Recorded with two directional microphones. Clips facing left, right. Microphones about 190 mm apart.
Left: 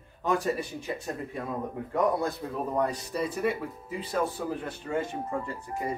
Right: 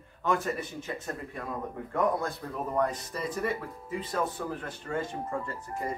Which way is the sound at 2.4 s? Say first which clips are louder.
Left 3 dB; 15° left (ahead or behind).